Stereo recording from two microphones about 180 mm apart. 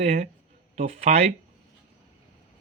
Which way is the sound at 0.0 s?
40° right (ahead or behind).